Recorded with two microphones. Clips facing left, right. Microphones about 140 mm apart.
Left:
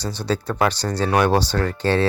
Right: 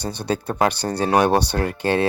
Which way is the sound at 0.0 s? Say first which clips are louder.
Even; 60° right (ahead or behind).